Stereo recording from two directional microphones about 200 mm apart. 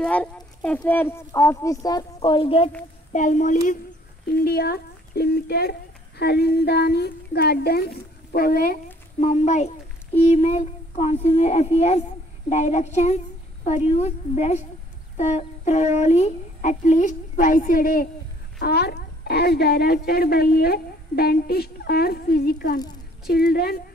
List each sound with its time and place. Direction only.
0.0 s speech: 5° left (ahead or behind); by 2.7 s 30° left (ahead or behind)
3.1 s speech: 40° left (ahead or behind)
4.3 s speech: 50° left (ahead or behind)
9.2 s a woman's voice: 35° left (ahead or behind); by 23.8 s 50° left (ahead or behind)